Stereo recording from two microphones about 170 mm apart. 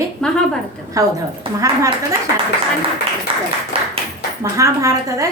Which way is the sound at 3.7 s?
35° right (ahead or behind).